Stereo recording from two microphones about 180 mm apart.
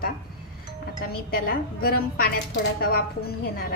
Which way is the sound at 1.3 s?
55° left (ahead or behind).